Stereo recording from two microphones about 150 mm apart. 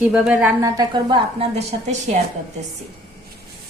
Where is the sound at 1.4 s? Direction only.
45° right (ahead or behind).